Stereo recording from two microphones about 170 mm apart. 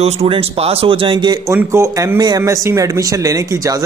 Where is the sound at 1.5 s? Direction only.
15° right (ahead or behind).